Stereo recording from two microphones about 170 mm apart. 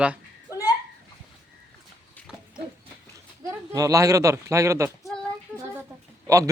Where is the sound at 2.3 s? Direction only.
5° right (ahead or behind).